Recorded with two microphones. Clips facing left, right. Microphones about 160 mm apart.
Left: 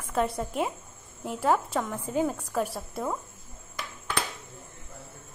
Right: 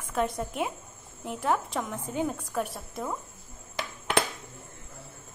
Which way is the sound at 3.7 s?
80° right.